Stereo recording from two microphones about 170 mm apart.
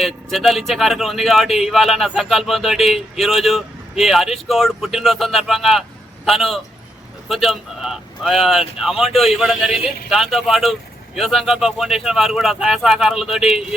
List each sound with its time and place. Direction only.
0.0 s a man's voice: centre (ahead or behind)